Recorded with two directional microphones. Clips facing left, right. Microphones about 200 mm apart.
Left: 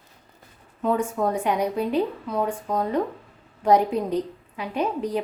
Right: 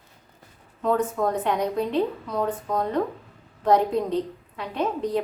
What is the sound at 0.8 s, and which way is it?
A woman's voice, 10° left (ahead or behind).